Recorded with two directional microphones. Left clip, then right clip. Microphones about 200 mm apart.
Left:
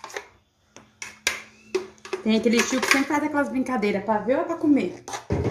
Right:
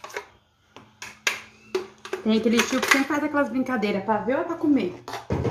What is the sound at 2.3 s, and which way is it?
Speech, centre (ahead or behind).